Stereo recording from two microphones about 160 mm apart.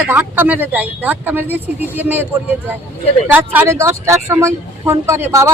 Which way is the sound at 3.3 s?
10° right (ahead or behind).